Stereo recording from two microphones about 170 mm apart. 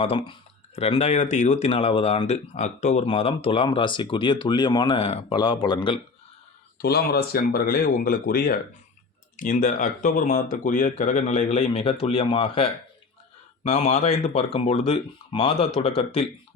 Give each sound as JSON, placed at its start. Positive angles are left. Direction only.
{"t": 0.0, "sound": "speech", "side_deg": 35}
{"t": 6.7, "sound": "speech", "side_deg": 65}
{"t": 9.4, "sound": "speech", "side_deg": 50}
{"t": 13.7, "sound": "speech", "side_deg": 35}